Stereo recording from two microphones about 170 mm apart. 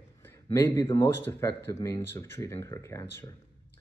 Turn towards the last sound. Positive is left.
turn(degrees=20)  # may be behind; listen again after turning